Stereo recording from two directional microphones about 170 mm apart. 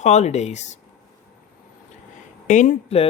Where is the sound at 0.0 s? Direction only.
40° left (ahead or behind).